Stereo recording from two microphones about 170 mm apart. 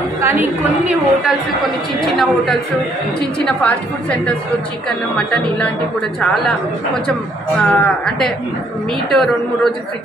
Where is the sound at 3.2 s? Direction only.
5° left (ahead or behind).